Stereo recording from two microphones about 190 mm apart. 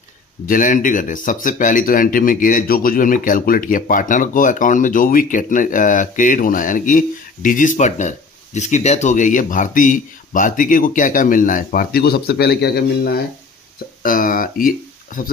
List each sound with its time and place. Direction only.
0.5 s speech: 45° left (ahead or behind)
14.0 s speech: 45° left (ahead or behind)